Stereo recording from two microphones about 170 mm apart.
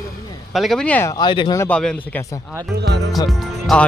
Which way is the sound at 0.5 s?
Centre (ahead or behind).